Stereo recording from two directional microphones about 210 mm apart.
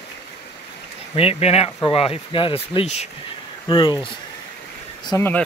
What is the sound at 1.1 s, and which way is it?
Speech, 30° left (ahead or behind).